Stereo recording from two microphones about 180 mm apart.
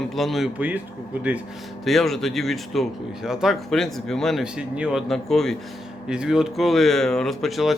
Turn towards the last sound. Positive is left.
turn(degrees=0)  # may be behind; listen again after turning